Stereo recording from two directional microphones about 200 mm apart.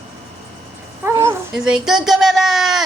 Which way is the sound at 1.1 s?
10° right (ahead or behind).